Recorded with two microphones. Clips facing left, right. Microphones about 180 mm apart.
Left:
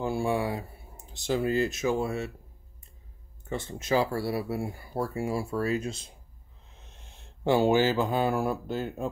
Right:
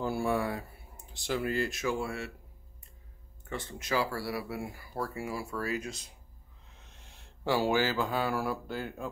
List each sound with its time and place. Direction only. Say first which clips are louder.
0.0 s speech: left 2 dB; 25° left (ahead or behind)
3.4 s speech: left 5 dB; 25° left (ahead or behind)